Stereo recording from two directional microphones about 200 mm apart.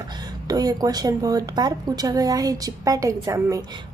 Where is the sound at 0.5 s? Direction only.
20° right (ahead or behind).